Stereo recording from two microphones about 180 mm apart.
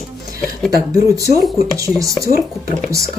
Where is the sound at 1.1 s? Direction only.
20° right (ahead or behind).